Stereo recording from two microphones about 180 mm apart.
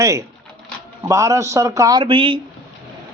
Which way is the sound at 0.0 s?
20° right (ahead or behind).